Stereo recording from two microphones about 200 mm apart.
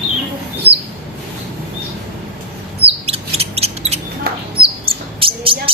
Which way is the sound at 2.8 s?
30° right (ahead or behind).